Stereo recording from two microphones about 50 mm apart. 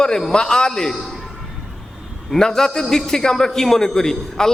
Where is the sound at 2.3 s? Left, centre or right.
Centre.